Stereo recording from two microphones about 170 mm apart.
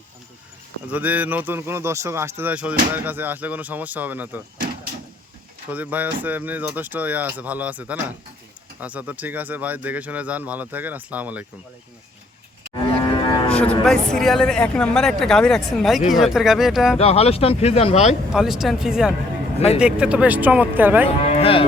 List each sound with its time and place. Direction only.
0.9 s speech: 10° right (ahead or behind)
5.7 s speech: 10° right (ahead or behind)
13.1 s cattle: 25° left (ahead or behind)
13.5 s speech: 5° left (ahead or behind)
17.0 s speech: 35° left (ahead or behind)
18.3 s speech: centre (ahead or behind)
19.5 s a man's voice: 35° left (ahead or behind)
19.8 s speech: 5° right (ahead or behind)
21.2 s moo: 35° left (ahead or behind)